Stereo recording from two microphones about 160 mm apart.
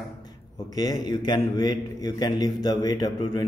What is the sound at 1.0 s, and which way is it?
A man's voice, 25° left (ahead or behind).